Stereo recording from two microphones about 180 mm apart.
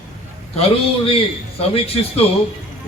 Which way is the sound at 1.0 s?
30° left (ahead or behind).